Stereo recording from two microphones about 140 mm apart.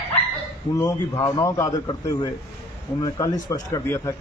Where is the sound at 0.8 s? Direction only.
25° left (ahead or behind).